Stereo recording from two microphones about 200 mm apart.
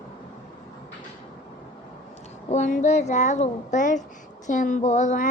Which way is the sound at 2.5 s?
40° left (ahead or behind).